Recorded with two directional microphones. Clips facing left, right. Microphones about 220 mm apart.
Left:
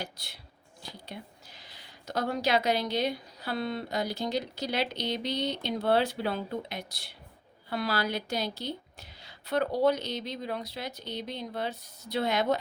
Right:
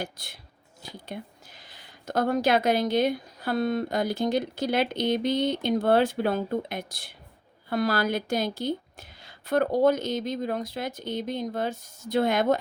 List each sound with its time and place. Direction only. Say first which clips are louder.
0.0 s speech: right 5 dB; 50° right (ahead or behind)